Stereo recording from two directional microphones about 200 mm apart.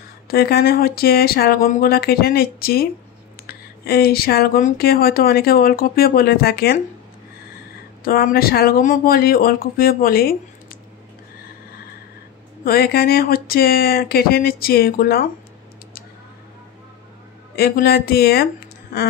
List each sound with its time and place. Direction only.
0.3 s speech: 50° left (ahead or behind)
8.0 s speech: 45° left (ahead or behind)
12.6 s speech: 50° left (ahead or behind)
17.6 s speech: 50° left (ahead or behind)